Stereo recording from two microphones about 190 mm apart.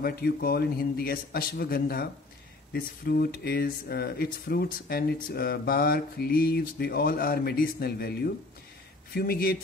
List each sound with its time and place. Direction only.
0.0 s speech: 55° left (ahead or behind)